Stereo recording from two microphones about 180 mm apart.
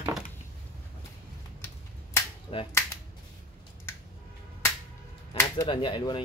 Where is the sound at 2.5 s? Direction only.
30° left (ahead or behind).